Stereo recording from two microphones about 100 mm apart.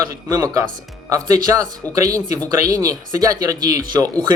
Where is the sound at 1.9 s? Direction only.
35° right (ahead or behind).